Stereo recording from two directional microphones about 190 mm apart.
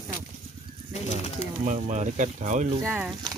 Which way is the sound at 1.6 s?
40° right (ahead or behind).